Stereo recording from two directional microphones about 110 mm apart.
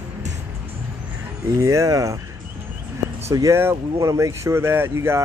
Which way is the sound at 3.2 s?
25° right (ahead or behind).